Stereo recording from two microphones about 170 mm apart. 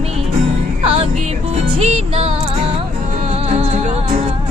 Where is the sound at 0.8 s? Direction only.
35° right (ahead or behind).